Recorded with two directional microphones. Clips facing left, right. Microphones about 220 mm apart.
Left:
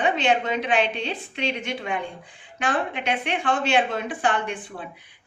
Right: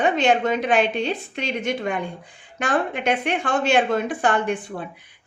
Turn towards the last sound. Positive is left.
turn(degrees=-45)  # may be behind; listen again after turning